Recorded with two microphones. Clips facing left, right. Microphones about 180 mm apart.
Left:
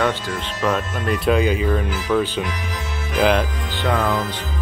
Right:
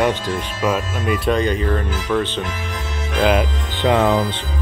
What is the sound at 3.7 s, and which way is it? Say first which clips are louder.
Music: right 5 dB; 15° right (ahead or behind).